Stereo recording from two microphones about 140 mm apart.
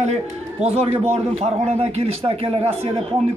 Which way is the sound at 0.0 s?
50° right (ahead or behind).